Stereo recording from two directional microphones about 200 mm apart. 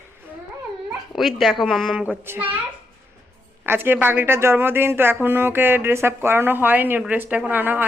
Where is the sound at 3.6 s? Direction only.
10° right (ahead or behind).